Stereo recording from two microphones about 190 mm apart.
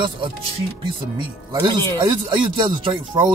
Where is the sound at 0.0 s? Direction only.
25° right (ahead or behind).